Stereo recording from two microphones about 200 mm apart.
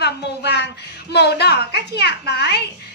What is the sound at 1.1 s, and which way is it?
A child's voice, 55° left (ahead or behind).